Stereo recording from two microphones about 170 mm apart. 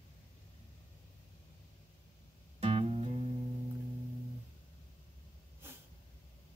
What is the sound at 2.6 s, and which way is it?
Music, 35° right (ahead or behind).